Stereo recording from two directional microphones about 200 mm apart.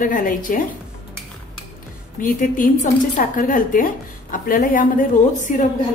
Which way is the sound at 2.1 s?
40° left (ahead or behind).